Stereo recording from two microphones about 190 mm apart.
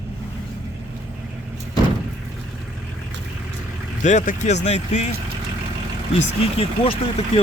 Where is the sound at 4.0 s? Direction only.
40° left (ahead or behind).